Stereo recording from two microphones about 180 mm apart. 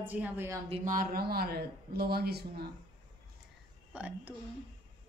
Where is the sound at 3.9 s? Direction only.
5° right (ahead or behind).